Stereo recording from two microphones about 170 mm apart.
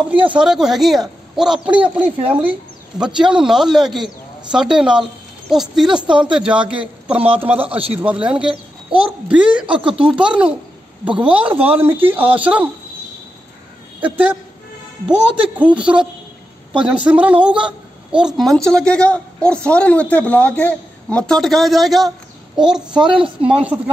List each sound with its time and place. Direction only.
0.3 s a woman's voice: 5° right (ahead or behind)
6.0 s speech: 30° right (ahead or behind)
6.3 s a child's voice: 5° right (ahead or behind)
7.6 s a man's voice: 35° right (ahead or behind)
7.9 s a child's voice: 10° right (ahead or behind)
9.7 s speech: 30° right (ahead or behind)
9.9 s a child's voice: 5° right (ahead or behind)
14.0 s a child's voice: 10° right (ahead or behind)